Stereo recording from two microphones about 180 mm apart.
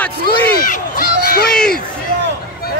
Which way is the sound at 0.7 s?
55° left (ahead or behind).